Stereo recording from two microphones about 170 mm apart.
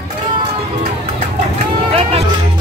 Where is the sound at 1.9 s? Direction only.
35° right (ahead or behind).